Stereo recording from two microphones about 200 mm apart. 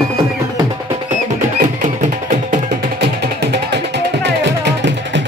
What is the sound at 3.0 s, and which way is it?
Music, 55° right (ahead or behind).